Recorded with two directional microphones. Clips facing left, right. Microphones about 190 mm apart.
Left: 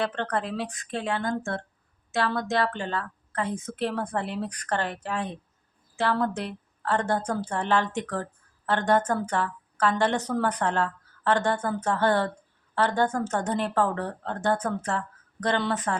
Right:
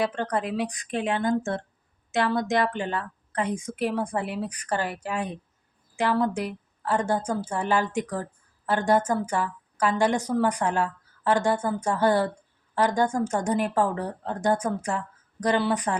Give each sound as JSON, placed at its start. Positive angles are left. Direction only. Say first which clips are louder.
{"t": 0.0, "sound": "a woman's voice", "louder": "right 2 dB", "side_deg": -10}